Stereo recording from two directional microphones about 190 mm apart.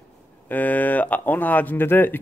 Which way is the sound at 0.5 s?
10° left (ahead or behind).